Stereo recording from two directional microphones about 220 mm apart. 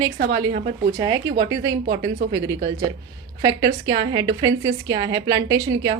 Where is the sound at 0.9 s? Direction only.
20° right (ahead or behind).